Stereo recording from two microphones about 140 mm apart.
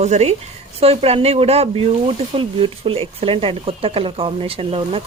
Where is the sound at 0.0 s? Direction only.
55° right (ahead or behind).